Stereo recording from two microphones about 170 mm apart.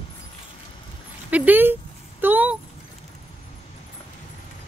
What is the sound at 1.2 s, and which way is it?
Speech, 10° right (ahead or behind).